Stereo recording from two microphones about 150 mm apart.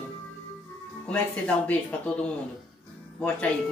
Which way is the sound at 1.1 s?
10° left (ahead or behind).